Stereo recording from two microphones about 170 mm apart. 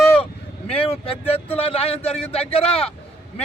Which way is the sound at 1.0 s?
35° left (ahead or behind).